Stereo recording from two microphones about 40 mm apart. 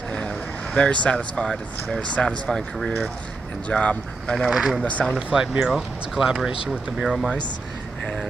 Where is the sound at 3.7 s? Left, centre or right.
Left.